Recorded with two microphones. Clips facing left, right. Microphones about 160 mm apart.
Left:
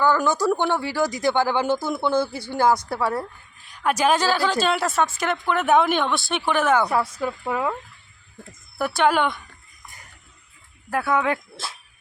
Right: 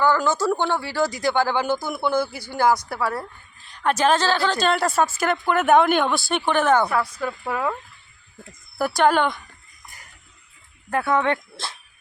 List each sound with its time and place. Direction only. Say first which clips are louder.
0.0 s speech: even; 15° left (ahead or behind)
1.8 s speech: left 1 dB; 15° right (ahead or behind)
2.1 s speech: left 1 dB; 25° left (ahead or behind)
3.7 s a woman's voice: right 1 dB; 10° left (ahead or behind)
7.2 s speech: left 1 dB; 15° left (ahead or behind)
8.8 s a woman's voice: right 1 dB; centre (ahead or behind)
10.9 s a woman's voice: right 1 dB; 5° left (ahead or behind)